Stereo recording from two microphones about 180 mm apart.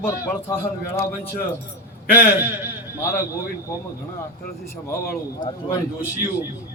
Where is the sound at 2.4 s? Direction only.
10° right (ahead or behind).